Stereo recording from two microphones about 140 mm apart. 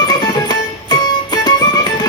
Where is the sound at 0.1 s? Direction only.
30° left (ahead or behind).